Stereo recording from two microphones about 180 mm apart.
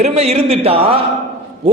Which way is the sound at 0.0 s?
35° right (ahead or behind).